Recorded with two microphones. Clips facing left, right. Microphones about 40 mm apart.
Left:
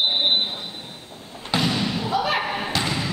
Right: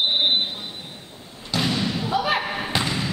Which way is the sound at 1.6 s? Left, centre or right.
Centre.